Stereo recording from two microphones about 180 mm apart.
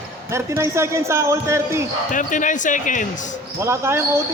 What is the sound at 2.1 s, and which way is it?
Speech, 45° left (ahead or behind).